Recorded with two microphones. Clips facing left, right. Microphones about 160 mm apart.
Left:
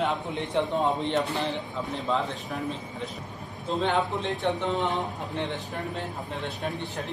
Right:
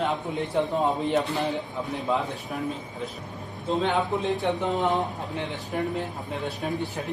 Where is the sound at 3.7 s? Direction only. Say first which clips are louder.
Right 1 dB; centre (ahead or behind).